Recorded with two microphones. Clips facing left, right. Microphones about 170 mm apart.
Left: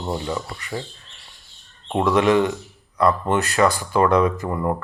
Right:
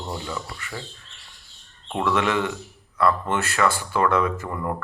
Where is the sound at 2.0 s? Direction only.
35° left (ahead or behind).